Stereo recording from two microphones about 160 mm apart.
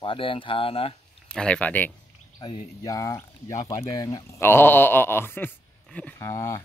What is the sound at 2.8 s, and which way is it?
Speech, 20° left (ahead or behind).